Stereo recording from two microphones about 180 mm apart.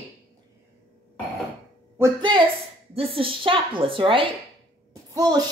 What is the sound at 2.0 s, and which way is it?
A woman's voice, 25° right (ahead or behind).